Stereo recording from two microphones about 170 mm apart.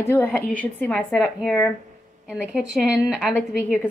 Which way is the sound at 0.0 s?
15° left (ahead or behind).